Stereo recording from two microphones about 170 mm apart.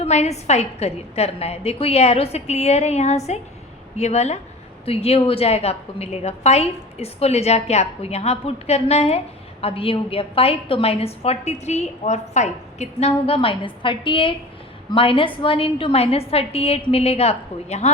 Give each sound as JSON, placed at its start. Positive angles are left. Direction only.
{"t": 0.0, "sound": "a woman's voice", "side_deg": 40}